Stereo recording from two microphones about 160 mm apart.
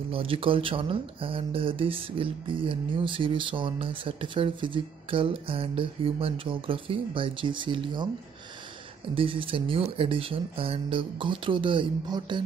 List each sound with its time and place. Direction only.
0.1 s speech: 35° right (ahead or behind)
9.1 s speech: 35° right (ahead or behind)